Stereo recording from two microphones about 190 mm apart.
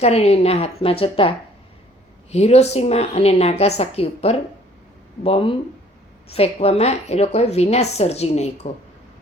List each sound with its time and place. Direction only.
0.0 s a woman's voice: 35° left (ahead or behind)
2.3 s a woman's voice: 35° left (ahead or behind)